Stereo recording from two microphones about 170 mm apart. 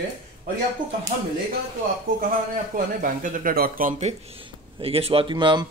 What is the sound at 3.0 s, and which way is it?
Speech, 55° right (ahead or behind).